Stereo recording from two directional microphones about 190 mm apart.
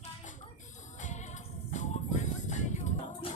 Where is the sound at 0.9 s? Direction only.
40° left (ahead or behind).